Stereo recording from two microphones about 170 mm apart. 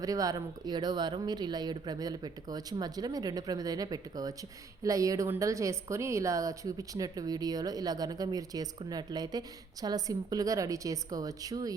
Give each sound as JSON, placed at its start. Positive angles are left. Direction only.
{"t": 0.0, "sound": "a woman's voice", "side_deg": -20}